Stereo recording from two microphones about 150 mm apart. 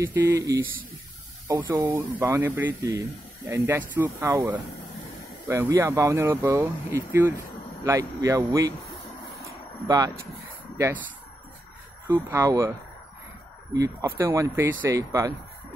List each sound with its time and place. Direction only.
0.1 s speech: 20° right (ahead or behind)
1.7 s speech: 15° right (ahead or behind)
2.8 s speech: 25° right (ahead or behind)
3.5 s speech: 15° right (ahead or behind)
5.5 s speech: 20° right (ahead or behind)
9.8 s speech: 25° right (ahead or behind)
12.1 s speech: 15° right (ahead or behind)
13.7 s speech: 20° right (ahead or behind)